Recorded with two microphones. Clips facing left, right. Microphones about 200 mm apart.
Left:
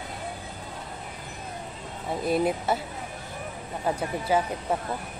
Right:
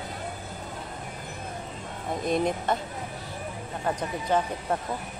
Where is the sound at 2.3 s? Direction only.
5° left (ahead or behind).